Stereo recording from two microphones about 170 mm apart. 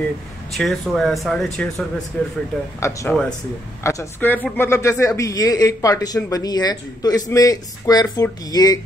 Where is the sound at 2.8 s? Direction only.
20° left (ahead or behind).